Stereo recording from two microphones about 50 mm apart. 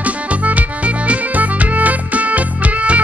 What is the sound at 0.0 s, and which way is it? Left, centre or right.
Music, right.